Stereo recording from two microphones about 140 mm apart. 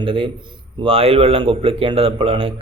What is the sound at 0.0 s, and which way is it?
A man's voice, 40° right (ahead or behind).